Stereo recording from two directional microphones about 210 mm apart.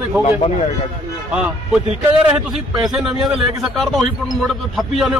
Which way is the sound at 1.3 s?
5° right (ahead or behind).